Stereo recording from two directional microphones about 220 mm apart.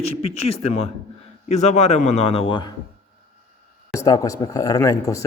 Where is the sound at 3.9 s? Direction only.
15° left (ahead or behind).